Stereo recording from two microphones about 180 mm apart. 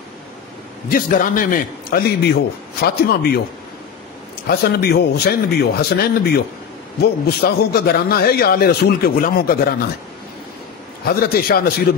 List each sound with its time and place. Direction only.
0.8 s a man's voice: 50° left (ahead or behind)
4.5 s a man's voice: 60° left (ahead or behind)
11.1 s a man's voice: 55° left (ahead or behind)